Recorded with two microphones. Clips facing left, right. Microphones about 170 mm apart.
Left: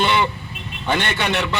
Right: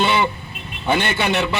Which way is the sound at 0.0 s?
5° right (ahead or behind).